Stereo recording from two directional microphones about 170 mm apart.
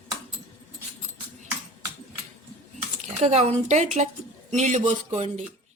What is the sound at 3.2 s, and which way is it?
A woman's voice, 40° right (ahead or behind).